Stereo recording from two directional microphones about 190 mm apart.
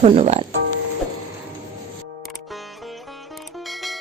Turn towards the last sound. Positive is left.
turn(degrees=0)  # may be behind; listen again after turning